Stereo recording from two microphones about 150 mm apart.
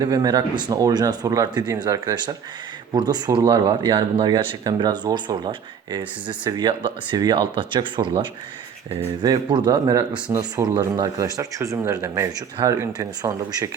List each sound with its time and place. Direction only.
0.0 s speech: 25° right (ahead or behind)